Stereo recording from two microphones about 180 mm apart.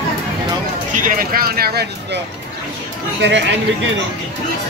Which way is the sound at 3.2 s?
80° right.